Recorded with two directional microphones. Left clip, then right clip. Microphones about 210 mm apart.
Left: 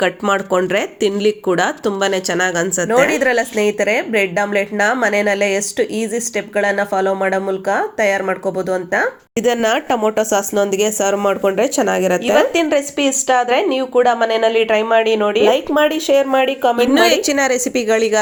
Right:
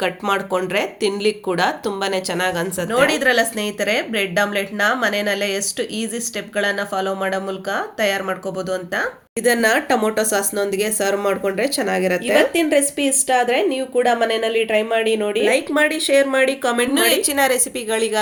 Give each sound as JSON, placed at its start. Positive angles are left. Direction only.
{"t": 0.0, "sound": "speech", "side_deg": 30}
{"t": 9.4, "sound": "speech", "side_deg": 40}
{"t": 12.5, "sound": "a woman's voice", "side_deg": 5}
{"t": 16.8, "sound": "speech", "side_deg": 40}